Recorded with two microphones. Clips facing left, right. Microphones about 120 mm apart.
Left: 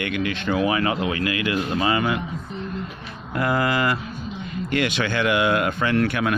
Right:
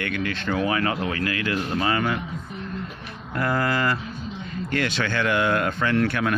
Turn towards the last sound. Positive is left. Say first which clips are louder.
# left 1 dB
turn(degrees=15)  # may be behind; listen again after turning